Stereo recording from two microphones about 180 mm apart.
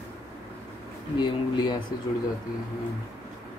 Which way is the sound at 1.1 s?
25° left (ahead or behind).